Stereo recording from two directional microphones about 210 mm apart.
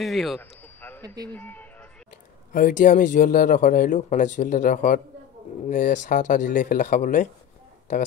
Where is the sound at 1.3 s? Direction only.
10° left (ahead or behind).